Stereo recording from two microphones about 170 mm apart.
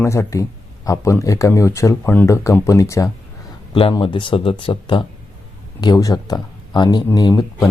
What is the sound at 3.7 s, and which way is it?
Speech, 30° left (ahead or behind).